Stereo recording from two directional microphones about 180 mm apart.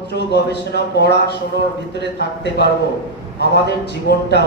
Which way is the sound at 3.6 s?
65° left (ahead or behind).